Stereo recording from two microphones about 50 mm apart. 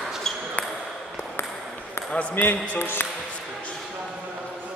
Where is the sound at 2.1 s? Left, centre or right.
Left.